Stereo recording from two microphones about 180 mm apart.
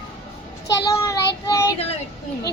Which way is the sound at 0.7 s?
20° left (ahead or behind).